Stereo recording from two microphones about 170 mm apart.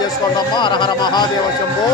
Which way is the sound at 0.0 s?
25° left (ahead or behind).